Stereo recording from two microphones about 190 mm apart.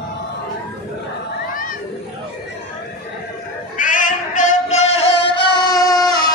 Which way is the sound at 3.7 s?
45° left (ahead or behind).